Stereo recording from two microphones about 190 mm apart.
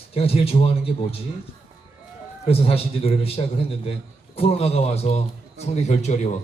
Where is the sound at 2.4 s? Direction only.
30° left (ahead or behind).